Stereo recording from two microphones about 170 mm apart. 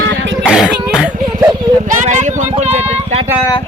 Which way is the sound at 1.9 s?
45° right (ahead or behind).